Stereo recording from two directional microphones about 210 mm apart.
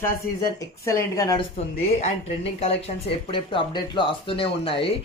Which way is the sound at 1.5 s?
30° left (ahead or behind).